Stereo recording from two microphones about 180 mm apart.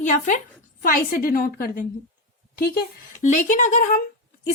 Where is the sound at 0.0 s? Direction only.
45° left (ahead or behind).